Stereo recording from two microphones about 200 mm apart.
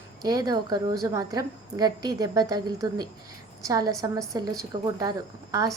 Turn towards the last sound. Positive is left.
turn(degrees=-20)  # may be behind; listen again after turning